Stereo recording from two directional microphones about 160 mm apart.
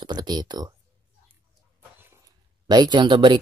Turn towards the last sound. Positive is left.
turn(degrees=-30)  # may be behind; listen again after turning